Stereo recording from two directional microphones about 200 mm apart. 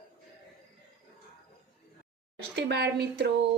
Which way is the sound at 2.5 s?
55° right (ahead or behind).